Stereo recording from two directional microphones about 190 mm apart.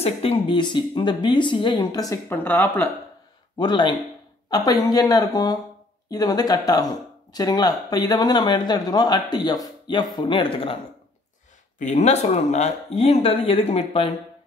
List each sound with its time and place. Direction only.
0.0 s speech: 30° left (ahead or behind); by 2.9 s 10° left (ahead or behind)
3.5 s speech: 25° left (ahead or behind)
11.8 s speech: 35° left (ahead or behind)